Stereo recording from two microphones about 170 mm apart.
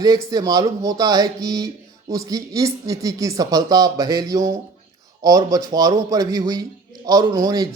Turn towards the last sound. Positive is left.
turn(degrees=-20)  # may be behind; listen again after turning